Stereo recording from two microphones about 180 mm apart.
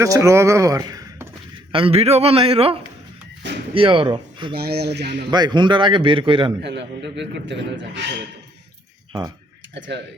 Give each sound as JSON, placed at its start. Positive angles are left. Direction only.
{"t": 0.0, "sound": "speech", "side_deg": -15}
{"t": 1.7, "sound": "a man's voice", "side_deg": -30}
{"t": 3.8, "sound": "a man's voice", "side_deg": -30}
{"t": 4.5, "sound": "a man's voice", "side_deg": -65}
{"t": 5.3, "sound": "a man's voice", "side_deg": -25}
{"t": 6.6, "sound": "a man's voice", "side_deg": -75}
{"t": 9.7, "sound": "a man's voice", "side_deg": -75}